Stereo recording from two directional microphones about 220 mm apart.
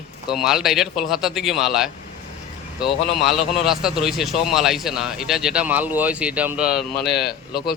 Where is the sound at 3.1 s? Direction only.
Centre (ahead or behind).